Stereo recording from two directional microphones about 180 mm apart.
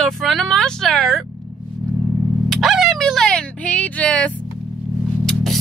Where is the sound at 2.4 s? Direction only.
Centre (ahead or behind).